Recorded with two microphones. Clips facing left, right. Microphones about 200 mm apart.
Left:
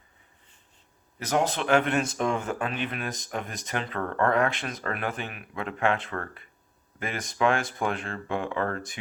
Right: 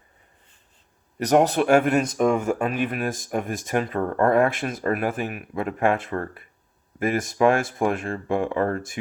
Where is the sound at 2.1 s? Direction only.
5° right (ahead or behind).